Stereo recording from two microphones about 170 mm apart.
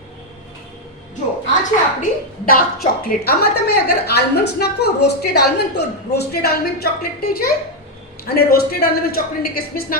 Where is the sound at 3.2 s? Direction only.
65° left (ahead or behind).